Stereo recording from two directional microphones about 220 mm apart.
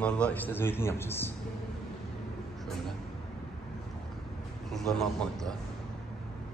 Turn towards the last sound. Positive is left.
turn(degrees=0)  # may be behind; listen again after turning